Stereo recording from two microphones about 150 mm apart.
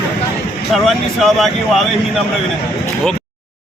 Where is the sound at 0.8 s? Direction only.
Centre (ahead or behind).